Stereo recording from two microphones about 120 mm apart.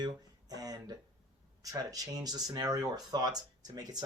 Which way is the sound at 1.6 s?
30° right (ahead or behind).